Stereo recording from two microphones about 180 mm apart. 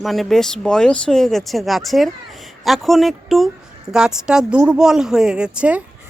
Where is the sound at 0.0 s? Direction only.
Centre (ahead or behind).